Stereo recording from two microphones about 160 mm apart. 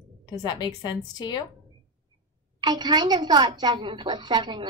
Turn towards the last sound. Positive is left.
turn(degrees=-30)  # may be behind; listen again after turning